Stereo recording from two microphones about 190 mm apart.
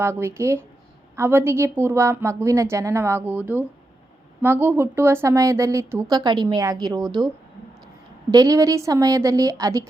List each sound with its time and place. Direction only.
0.0 s speech: 15° right (ahead or behind)
8.3 s speech: 20° right (ahead or behind)